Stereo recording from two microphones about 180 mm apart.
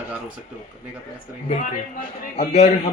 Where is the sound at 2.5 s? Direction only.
35° left (ahead or behind).